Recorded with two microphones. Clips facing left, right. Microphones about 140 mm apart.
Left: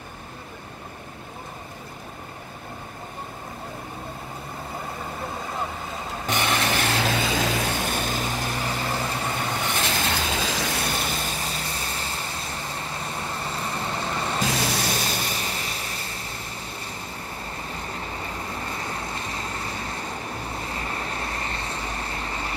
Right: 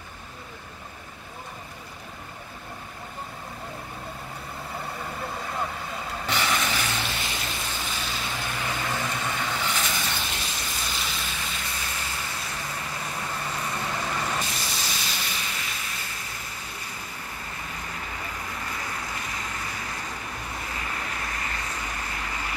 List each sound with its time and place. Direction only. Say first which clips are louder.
6.4 s vehicle: left 5 dB; 60° left (ahead or behind); by 9.6 s 35° left (ahead or behind)
9.7 s vehicle: left 3 dB; 60° left (ahead or behind); by 14.4 s 30° left (ahead or behind)
14.4 s vehicle: left 8 dB; 90° left
15.2 s a sound: left 4 dB; 35° left (ahead or behind)
17.6 s vehicle: left 3 dB; 30° left (ahead or behind)